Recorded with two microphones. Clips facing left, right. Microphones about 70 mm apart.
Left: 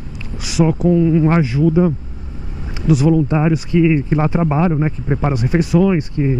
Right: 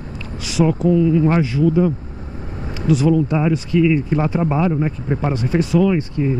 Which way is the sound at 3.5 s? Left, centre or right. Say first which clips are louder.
Left 1 dB; left.